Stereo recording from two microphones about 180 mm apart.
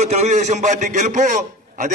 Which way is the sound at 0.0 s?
40° right (ahead or behind).